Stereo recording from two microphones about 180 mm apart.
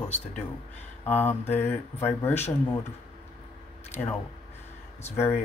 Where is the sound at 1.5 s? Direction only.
10° left (ahead or behind).